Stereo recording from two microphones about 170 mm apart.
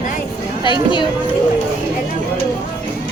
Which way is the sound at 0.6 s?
30° left (ahead or behind).